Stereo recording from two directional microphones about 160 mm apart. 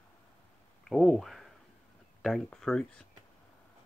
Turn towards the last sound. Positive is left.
turn(degrees=5)  # may be behind; listen again after turning